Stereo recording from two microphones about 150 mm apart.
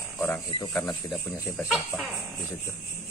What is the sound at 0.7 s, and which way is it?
Speech, 15° left (ahead or behind).